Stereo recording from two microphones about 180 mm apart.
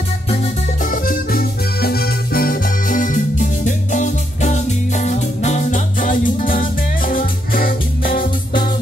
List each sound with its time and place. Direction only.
0.9 s music: 50° left (ahead or behind)